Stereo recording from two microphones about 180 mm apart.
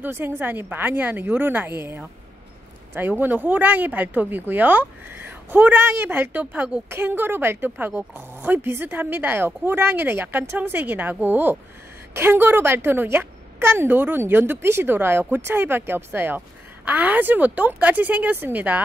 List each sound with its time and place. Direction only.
0.0 s speech: 10° right (ahead or behind)